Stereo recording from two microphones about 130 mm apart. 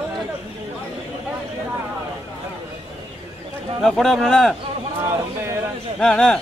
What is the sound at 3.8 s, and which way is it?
Speech, centre (ahead or behind).